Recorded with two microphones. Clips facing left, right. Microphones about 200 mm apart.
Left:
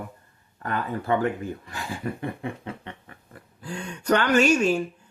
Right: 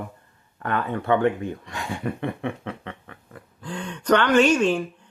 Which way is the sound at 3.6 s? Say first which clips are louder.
Right 2 dB; 10° left (ahead or behind).